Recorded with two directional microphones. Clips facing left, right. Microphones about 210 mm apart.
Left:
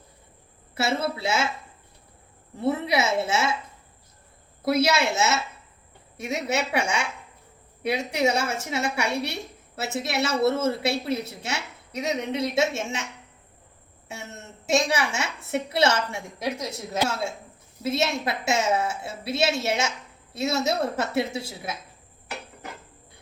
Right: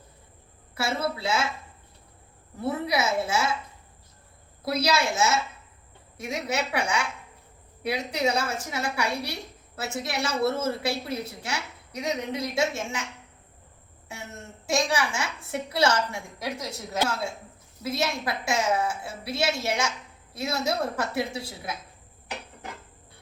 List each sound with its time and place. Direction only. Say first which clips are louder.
0.8 s a woman's voice: left 2 dB; 25° left (ahead or behind)
2.6 s a woman's voice: left 3 dB; 25° left (ahead or behind)
4.6 s a woman's voice: left 3 dB; 25° left (ahead or behind)
14.1 s a woman's voice: left 1 dB; 25° left (ahead or behind)